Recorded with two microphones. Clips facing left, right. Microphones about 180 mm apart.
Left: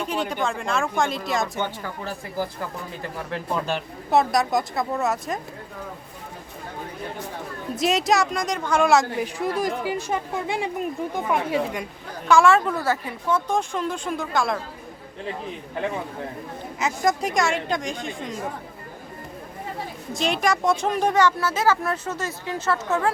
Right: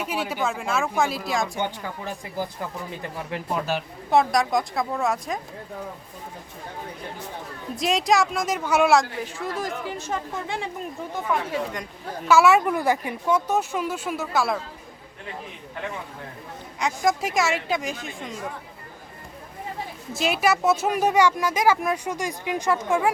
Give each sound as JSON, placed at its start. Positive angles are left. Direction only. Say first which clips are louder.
{"t": 0.0, "sound": "a woman's voice", "louder": "left 1 dB", "side_deg": -5}
{"t": 1.6, "sound": "a woman's voice", "louder": "even", "side_deg": -15}
{"t": 7.8, "sound": "a woman's voice", "louder": "even", "side_deg": 0}
{"t": 9.2, "sound": "speech", "louder": "left 5 dB", "side_deg": 15}
{"t": 12.2, "sound": "speech", "louder": "even", "side_deg": -5}
{"t": 16.8, "sound": "a woman's voice", "louder": "even", "side_deg": 0}
{"t": 20.1, "sound": "speech", "louder": "right 1 dB", "side_deg": -5}